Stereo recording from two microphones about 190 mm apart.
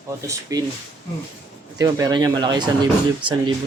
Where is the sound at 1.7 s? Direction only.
20° right (ahead or behind).